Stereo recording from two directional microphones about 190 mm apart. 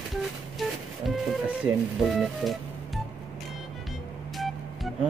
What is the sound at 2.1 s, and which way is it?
Music, centre (ahead or behind).